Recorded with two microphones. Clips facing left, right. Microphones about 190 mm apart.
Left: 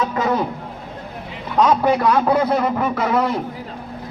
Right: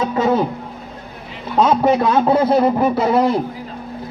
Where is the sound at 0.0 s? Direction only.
25° right (ahead or behind).